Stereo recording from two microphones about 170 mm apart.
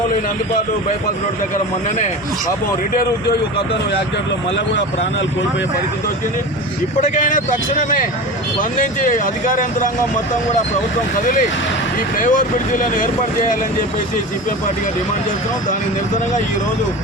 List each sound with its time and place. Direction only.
6.9 s speech: 50° left (ahead or behind)
11.2 s speech: 50° left (ahead or behind)